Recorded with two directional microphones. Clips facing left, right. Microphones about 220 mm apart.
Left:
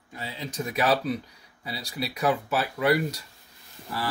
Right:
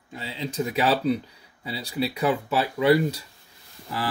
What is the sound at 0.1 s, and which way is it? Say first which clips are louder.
Speech: right 4 dB; 25° right (ahead or behind).